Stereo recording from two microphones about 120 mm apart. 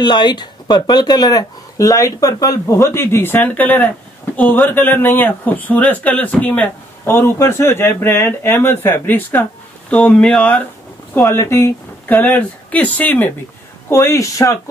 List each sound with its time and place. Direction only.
0.0 s speech: 35° left (ahead or behind); by 10.6 s 10° left (ahead or behind)
11.1 s speech: 20° left (ahead or behind)